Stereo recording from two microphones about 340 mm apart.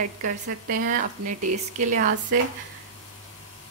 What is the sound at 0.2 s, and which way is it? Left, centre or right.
A woman's voice, right.